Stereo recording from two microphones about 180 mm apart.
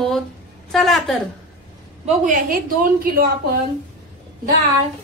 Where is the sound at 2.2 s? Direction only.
50° right (ahead or behind).